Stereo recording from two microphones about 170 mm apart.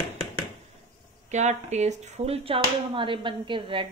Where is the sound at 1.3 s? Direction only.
45° right (ahead or behind).